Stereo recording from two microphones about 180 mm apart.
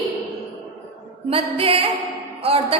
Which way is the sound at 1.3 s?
30° right (ahead or behind).